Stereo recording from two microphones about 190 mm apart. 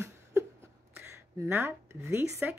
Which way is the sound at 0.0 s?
15° right (ahead or behind).